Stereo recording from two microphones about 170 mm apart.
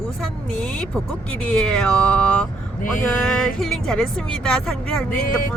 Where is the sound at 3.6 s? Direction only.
Centre (ahead or behind).